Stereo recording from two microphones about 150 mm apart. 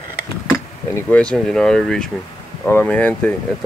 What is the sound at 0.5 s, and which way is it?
Speech, 10° left (ahead or behind).